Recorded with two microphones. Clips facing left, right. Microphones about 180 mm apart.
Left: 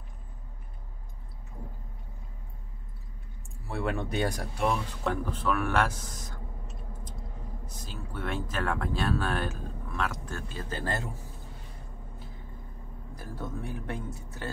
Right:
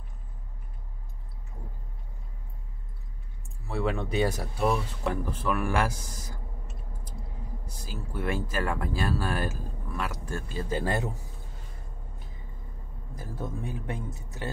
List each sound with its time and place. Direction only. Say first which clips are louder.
3.6 s speech: right 2 dB; centre (ahead or behind)
7.8 s speech: right 4 dB; 10° right (ahead or behind)
13.1 s speech: right 2 dB; 15° right (ahead or behind)